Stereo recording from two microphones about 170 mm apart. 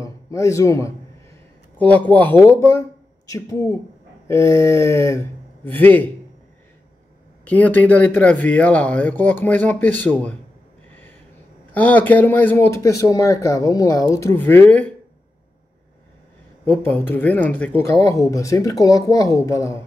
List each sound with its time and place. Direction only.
0.0 s speech: 20° left (ahead or behind)
7.4 s speech: 10° left (ahead or behind)
11.7 s speech: 10° left (ahead or behind)
16.6 s speech: 10° left (ahead or behind)